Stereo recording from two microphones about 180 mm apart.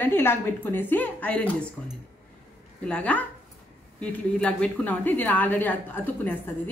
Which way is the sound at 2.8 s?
5° left (ahead or behind).